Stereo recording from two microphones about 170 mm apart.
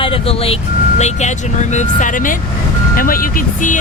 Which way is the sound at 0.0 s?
35° left (ahead or behind).